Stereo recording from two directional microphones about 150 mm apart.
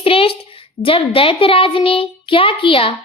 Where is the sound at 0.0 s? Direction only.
40° left (ahead or behind).